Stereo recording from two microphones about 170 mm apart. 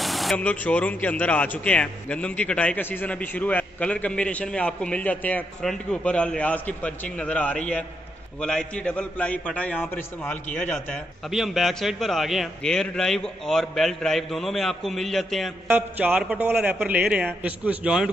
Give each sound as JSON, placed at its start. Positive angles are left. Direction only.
{"t": 0.0, "sound": "a man's voice", "side_deg": 0}
{"t": 15.7, "sound": "a man's voice", "side_deg": -10}